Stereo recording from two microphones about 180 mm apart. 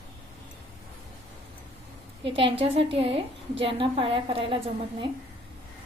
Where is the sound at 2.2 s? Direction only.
30° right (ahead or behind).